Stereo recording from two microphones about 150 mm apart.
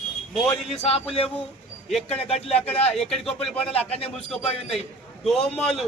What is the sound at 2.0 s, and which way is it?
Speech, 40° left (ahead or behind).